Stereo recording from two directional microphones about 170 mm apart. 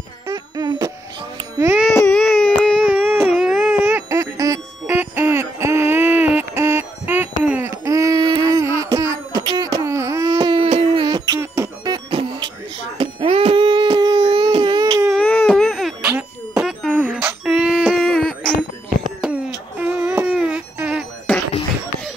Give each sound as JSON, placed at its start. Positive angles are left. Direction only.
{"t": 0.3, "sound": "music", "side_deg": -25}
{"t": 1.6, "sound": "music", "side_deg": -10}
{"t": 2.2, "sound": "baby cry", "side_deg": 5}
{"t": 2.8, "sound": "music", "side_deg": -10}
{"t": 12.9, "sound": "a sound", "side_deg": -35}
{"t": 15.1, "sound": "baby cry", "side_deg": 10}
{"t": 15.5, "sound": "a sound", "side_deg": 0}
{"t": 19.8, "sound": "music", "side_deg": -5}